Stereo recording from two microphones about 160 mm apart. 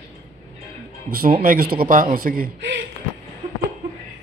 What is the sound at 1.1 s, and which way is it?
Speech, 65° right (ahead or behind).